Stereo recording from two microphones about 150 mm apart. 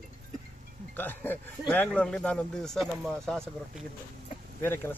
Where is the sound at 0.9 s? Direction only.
10° left (ahead or behind).